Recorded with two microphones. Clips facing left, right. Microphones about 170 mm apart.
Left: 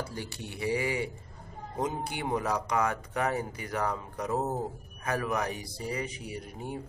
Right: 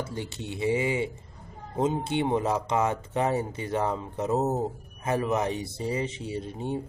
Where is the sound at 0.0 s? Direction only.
20° right (ahead or behind).